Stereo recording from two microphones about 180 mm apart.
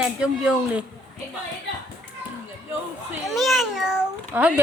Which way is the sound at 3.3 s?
Centre (ahead or behind).